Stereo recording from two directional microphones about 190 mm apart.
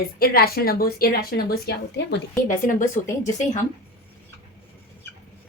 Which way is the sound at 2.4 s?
45° left (ahead or behind).